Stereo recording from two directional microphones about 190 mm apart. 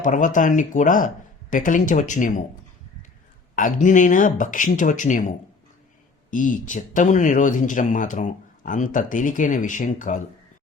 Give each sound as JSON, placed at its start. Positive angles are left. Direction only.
{"t": 0.0, "sound": "speech", "side_deg": 40}
{"t": 3.5, "sound": "speech", "side_deg": 45}
{"t": 6.3, "sound": "speech", "side_deg": 45}